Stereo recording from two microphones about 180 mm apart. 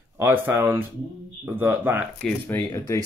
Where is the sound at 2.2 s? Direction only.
5° left (ahead or behind).